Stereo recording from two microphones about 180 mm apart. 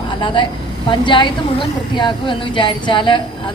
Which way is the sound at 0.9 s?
25° left (ahead or behind).